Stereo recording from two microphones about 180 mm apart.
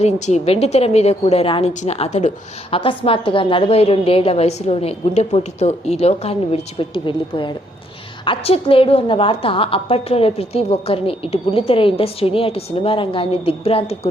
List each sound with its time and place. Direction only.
0.0 s a woman's voice: 40° left (ahead or behind)